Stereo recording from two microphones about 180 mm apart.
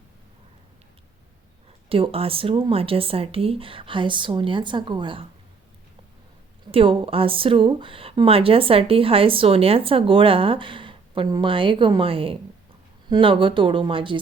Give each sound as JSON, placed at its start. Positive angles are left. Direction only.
{"t": 1.9, "sound": "speech", "side_deg": -30}
{"t": 6.7, "sound": "speech", "side_deg": -30}